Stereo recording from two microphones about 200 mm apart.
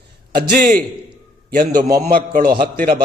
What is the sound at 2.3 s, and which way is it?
Speech, 45° right (ahead or behind).